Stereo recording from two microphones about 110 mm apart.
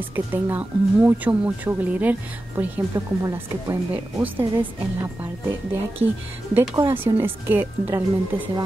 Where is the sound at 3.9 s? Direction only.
20° right (ahead or behind).